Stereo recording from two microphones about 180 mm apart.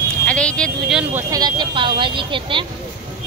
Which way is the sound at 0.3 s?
5° left (ahead or behind).